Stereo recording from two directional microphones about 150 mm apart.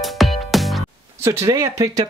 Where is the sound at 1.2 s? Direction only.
20° right (ahead or behind).